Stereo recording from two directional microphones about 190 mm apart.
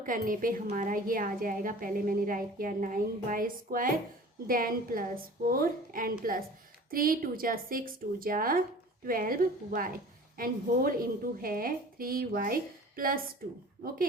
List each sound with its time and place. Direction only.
0.0 s a woman's voice: 45° right (ahead or behind)